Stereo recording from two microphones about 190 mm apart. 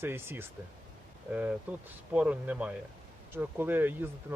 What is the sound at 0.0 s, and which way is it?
Speech, 10° right (ahead or behind).